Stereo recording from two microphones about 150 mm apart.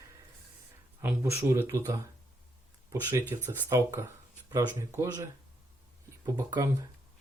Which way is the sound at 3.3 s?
15° right (ahead or behind).